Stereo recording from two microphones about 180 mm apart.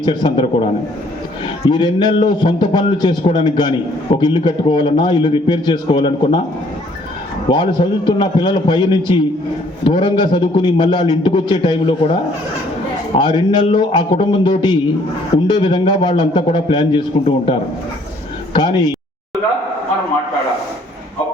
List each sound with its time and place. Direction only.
0.0 s a man's voice: 25° left (ahead or behind)
7.4 s a man's voice: 25° left (ahead or behind)